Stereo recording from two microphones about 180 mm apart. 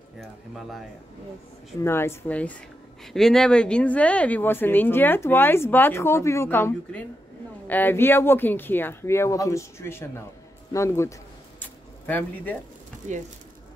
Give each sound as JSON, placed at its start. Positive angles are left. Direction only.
{"t": 0.2, "sound": "speech", "side_deg": 0}
{"t": 1.8, "sound": "speech", "side_deg": 15}
{"t": 11.6, "sound": "a sound", "side_deg": 10}
{"t": 13.0, "sound": "speech", "side_deg": -40}